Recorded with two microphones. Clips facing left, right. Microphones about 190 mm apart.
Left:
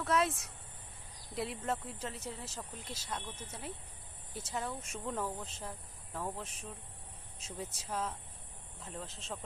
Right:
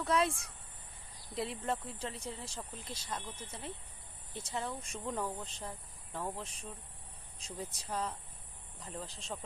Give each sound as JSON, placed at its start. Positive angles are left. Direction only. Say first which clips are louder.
{"t": 0.0, "sound": "speech", "louder": "even", "side_deg": 0}
{"t": 3.1, "sound": "speech", "louder": "even", "side_deg": -10}
{"t": 3.4, "sound": "speech", "louder": "even", "side_deg": 10}